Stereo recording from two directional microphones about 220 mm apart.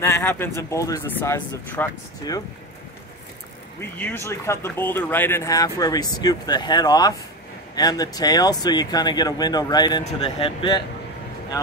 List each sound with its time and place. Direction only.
0.0 s speech: 10° left (ahead or behind)
4.0 s speech: 10° left (ahead or behind)